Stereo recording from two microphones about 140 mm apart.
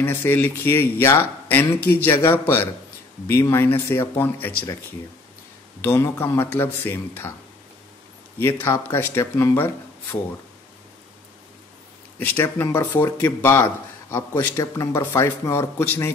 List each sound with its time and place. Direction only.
0.0 s speech: 15° left (ahead or behind)
5.8 s speech: 20° left (ahead or behind)
8.4 s speech: 15° left (ahead or behind)
12.2 s speech: 15° left (ahead or behind)